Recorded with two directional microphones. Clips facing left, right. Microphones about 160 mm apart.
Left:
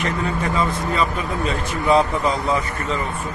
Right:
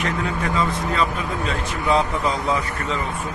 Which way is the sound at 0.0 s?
5° left (ahead or behind).